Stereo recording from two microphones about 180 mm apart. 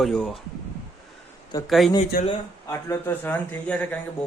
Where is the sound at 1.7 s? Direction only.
Centre (ahead or behind).